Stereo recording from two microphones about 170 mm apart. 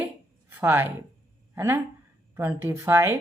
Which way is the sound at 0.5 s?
10° right (ahead or behind).